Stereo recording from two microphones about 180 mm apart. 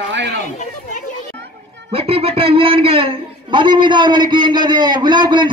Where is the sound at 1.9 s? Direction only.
30° right (ahead or behind).